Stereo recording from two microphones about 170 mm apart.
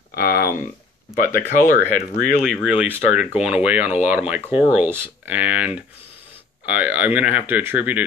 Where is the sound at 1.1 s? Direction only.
55° left (ahead or behind).